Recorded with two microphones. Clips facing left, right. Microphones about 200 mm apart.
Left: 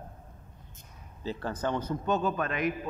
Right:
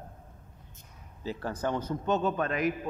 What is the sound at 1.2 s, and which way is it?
A man's voice, 10° right (ahead or behind).